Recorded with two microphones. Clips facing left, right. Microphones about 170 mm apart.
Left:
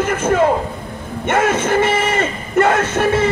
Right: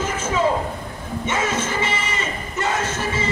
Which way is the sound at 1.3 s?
60° left (ahead or behind).